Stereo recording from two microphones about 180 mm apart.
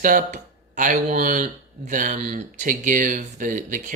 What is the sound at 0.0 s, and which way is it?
Speech, 50° right (ahead or behind).